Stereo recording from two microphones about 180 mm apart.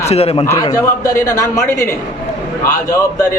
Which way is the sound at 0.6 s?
15° left (ahead or behind).